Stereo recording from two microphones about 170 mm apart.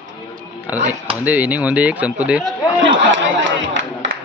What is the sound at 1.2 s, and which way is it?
Speech, 10° right (ahead or behind).